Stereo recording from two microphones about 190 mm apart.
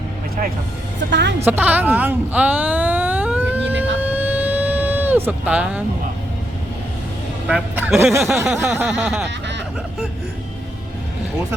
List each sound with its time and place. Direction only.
0.9 s speech: 70° right (ahead or behind)
1.5 s a sound: 10° right (ahead or behind)
7.4 s speech: 5° right (ahead or behind)